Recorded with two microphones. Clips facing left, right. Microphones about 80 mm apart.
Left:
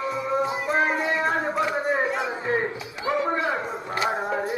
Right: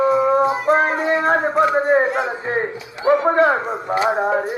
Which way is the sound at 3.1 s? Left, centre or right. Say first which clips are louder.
Right 10 dB; right.